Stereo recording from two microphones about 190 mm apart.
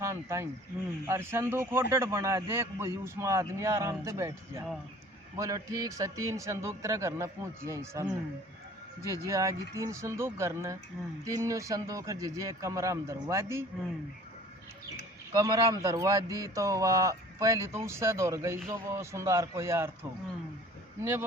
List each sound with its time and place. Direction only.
0.0 s a sound: 15° right (ahead or behind)
1.0 s a man's voice: 15° right (ahead or behind)
9.0 s a man's voice: 15° right (ahead or behind)
15.4 s a man's voice: 15° right (ahead or behind)
21.0 s a man's voice: 10° right (ahead or behind)